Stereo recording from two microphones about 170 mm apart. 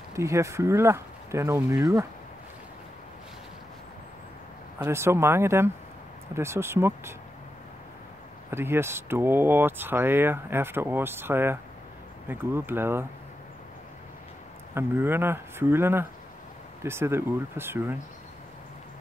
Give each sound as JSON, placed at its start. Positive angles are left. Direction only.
{"t": 0.1, "sound": "speech", "side_deg": -15}
{"t": 4.7, "sound": "speech", "side_deg": -15}
{"t": 8.5, "sound": "speech", "side_deg": -15}
{"t": 14.7, "sound": "speech", "side_deg": -15}